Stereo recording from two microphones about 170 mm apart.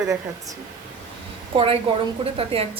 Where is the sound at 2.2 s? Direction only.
35° right (ahead or behind).